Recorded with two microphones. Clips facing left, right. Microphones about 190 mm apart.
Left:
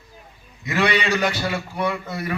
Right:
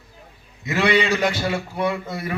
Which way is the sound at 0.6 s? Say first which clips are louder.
Right 2 dB; 25° right (ahead or behind).